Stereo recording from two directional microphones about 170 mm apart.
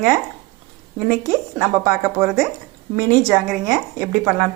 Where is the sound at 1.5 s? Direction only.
15° right (ahead or behind).